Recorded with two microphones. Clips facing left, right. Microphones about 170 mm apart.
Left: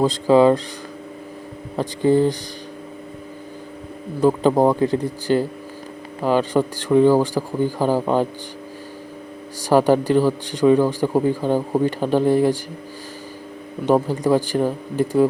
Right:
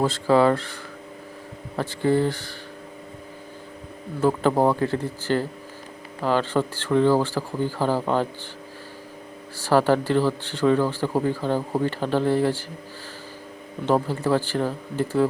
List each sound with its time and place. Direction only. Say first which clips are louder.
0.0 s a man's voice: left 4 dB; 15° left (ahead or behind)
1.7 s a man's voice: left 4 dB; 15° left (ahead or behind)
4.2 s a man's voice: left 4 dB; 15° left (ahead or behind)
9.6 s a man's voice: left 4 dB; 15° left (ahead or behind)
13.8 s a man's voice: left 4 dB; 15° left (ahead or behind)